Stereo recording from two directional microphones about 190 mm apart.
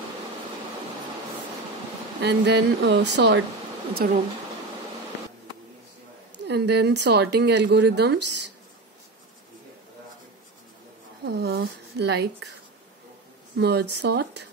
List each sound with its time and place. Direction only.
2.2 s speech: 65° right (ahead or behind)
4.0 s speech: 50° right (ahead or behind)
6.3 s speech: 65° right (ahead or behind)
11.2 s speech: 60° right (ahead or behind)
13.6 s speech: 60° right (ahead or behind)